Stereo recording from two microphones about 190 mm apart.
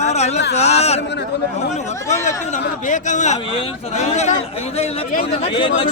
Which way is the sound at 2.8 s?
40° left (ahead or behind).